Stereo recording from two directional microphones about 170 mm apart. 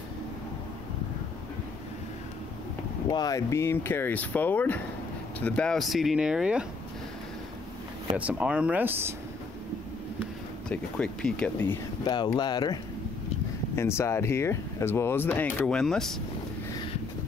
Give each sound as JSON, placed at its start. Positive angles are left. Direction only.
{"t": 3.1, "sound": "speech", "side_deg": 20}
{"t": 8.2, "sound": "speech", "side_deg": -5}
{"t": 10.7, "sound": "speech", "side_deg": 5}
{"t": 12.0, "sound": "speech", "side_deg": 25}
{"t": 13.7, "sound": "speech", "side_deg": 15}